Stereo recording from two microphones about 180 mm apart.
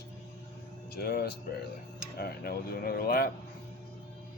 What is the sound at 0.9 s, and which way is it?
Speech, 60° left (ahead or behind).